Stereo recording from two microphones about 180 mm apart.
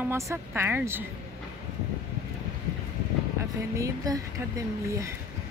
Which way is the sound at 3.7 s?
20° right (ahead or behind).